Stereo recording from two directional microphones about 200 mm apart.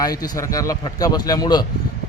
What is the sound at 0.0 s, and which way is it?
A man's voice, 15° left (ahead or behind).